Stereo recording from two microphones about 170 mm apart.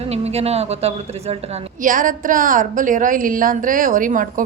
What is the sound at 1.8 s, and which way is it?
A woman's voice, 50° right (ahead or behind).